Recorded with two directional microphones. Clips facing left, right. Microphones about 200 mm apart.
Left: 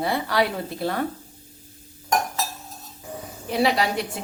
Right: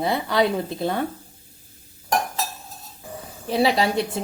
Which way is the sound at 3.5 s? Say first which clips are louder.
Right 2 dB; 30° right (ahead or behind).